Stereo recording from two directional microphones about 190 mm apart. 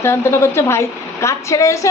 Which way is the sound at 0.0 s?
15° left (ahead or behind).